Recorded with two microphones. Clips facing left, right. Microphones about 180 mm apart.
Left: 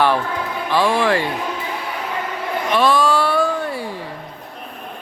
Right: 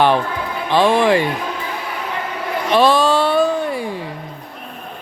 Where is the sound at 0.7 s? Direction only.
20° right (ahead or behind).